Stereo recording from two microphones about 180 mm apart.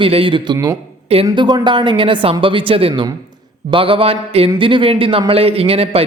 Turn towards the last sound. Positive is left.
turn(degrees=-30)  # may be behind; listen again after turning